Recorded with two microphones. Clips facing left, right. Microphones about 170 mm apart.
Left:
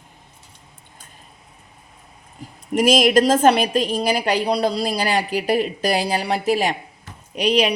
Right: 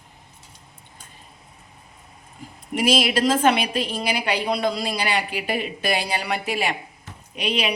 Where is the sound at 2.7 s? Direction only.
45° left (ahead or behind).